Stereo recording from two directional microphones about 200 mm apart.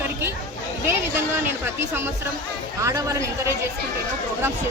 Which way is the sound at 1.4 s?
10° right (ahead or behind).